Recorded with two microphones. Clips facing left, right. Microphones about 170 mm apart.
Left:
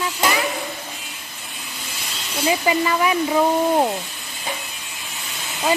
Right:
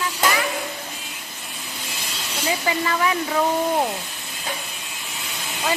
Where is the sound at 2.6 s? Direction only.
15° left (ahead or behind).